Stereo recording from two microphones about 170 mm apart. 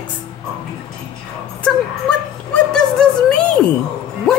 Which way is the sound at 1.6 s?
5° left (ahead or behind).